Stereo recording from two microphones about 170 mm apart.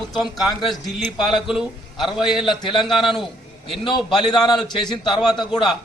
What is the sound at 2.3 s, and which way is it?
Speech, 30° left (ahead or behind).